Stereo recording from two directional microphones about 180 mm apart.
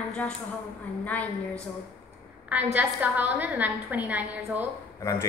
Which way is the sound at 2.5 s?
10° right (ahead or behind).